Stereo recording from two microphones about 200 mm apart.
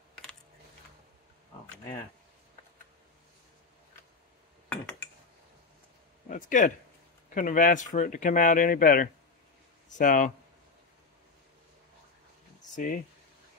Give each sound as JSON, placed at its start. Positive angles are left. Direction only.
{"t": 6.2, "sound": "a sound", "side_deg": 40}
{"t": 7.3, "sound": "speech", "side_deg": 40}
{"t": 12.7, "sound": "speech", "side_deg": 45}